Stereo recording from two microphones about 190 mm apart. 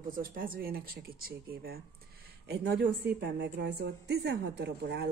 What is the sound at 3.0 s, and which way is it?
A woman's voice, 65° right (ahead or behind).